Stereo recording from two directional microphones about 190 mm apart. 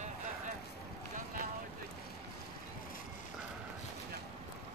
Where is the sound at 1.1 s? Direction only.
45° right (ahead or behind).